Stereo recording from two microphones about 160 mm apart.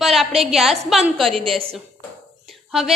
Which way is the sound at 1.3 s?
35° right (ahead or behind).